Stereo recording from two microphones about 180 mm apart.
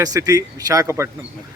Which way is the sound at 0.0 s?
20° right (ahead or behind).